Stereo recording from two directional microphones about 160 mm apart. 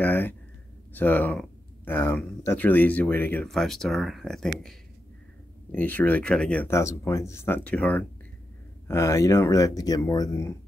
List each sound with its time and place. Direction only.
0.0 s a sound: 10° left (ahead or behind)
0.9 s speech: 10° left (ahead or behind)
6.7 s speech: 15° left (ahead or behind)